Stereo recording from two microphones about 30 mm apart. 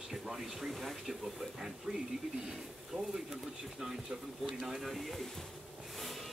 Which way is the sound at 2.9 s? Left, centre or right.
Right.